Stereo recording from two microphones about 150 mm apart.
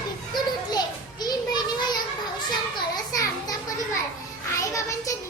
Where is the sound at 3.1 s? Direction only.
25° left (ahead or behind).